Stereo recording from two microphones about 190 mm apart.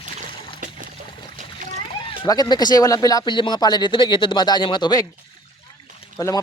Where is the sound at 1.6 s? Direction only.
40° right (ahead or behind).